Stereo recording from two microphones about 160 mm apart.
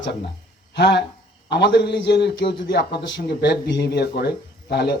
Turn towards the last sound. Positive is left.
turn(degrees=90)